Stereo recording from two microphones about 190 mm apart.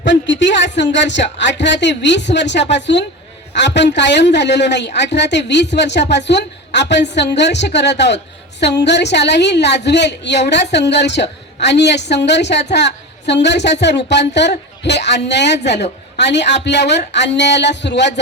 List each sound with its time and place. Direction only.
0.0 s a woman's voice: 70° left (ahead or behind)